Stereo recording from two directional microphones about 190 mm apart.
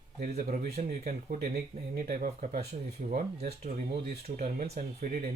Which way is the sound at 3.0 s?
35° right (ahead or behind).